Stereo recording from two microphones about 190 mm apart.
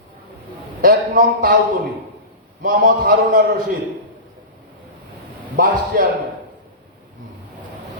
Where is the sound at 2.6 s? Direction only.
50° right (ahead or behind).